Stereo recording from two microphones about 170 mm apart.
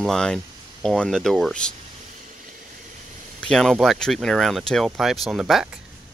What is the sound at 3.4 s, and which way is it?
Speech, 5° left (ahead or behind).